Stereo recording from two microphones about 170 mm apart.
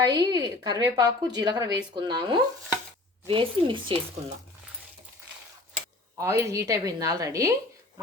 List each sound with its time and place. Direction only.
0.0 s a woman's voice: 25° right (ahead or behind)
6.1 s speech: 20° right (ahead or behind)